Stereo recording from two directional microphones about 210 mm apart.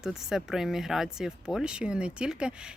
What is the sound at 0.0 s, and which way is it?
Speech, centre (ahead or behind).